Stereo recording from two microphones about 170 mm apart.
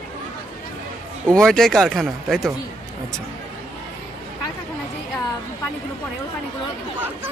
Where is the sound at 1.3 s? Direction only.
5° left (ahead or behind).